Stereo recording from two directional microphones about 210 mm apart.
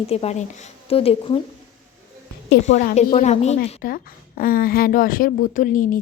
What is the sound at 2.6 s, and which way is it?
A woman's voice, 35° left (ahead or behind).